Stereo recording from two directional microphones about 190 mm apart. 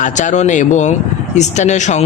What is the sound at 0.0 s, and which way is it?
Speech, 40° left (ahead or behind).